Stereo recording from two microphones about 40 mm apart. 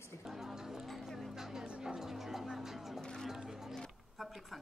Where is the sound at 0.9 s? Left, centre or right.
Centre.